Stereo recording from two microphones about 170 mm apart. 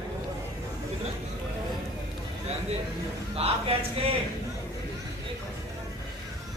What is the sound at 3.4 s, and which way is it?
Speech, 35° right (ahead or behind).